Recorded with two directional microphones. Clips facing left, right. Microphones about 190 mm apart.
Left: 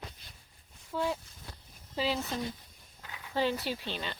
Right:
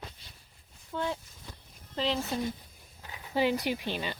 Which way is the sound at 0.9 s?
5° left (ahead or behind).